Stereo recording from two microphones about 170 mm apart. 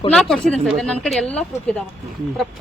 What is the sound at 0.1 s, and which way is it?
A woman's voice, 5° left (ahead or behind).